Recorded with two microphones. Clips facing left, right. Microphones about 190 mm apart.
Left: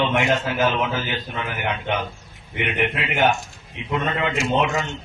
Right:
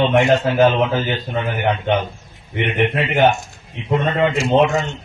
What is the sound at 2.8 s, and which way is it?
Speech, 45° right (ahead or behind).